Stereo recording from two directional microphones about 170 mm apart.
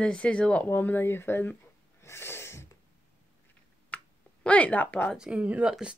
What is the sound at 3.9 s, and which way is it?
Finger snapping, 10° left (ahead or behind).